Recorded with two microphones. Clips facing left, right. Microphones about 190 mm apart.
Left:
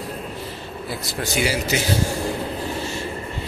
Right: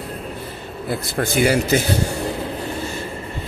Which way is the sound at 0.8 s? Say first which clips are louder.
Right 6 dB; 55° right (ahead or behind).